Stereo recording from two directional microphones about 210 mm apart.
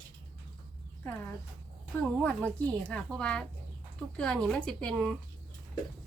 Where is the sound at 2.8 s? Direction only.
5° left (ahead or behind).